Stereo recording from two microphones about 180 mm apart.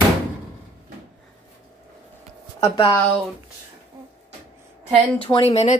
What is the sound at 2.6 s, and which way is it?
Speech, 30° left (ahead or behind).